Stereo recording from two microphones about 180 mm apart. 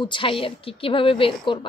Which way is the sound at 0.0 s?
30° left (ahead or behind).